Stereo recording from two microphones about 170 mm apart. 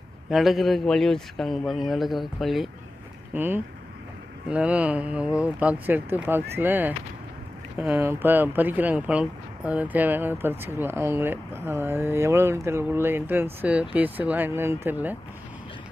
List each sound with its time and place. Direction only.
0.3 s a man's voice: centre (ahead or behind)
3.3 s speech: 10° right (ahead or behind)